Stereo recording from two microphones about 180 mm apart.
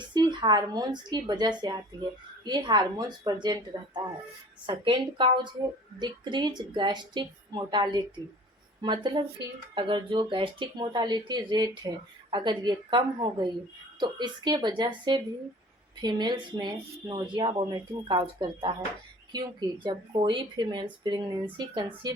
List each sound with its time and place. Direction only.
0.0 s a woman's voice: 25° right (ahead or behind)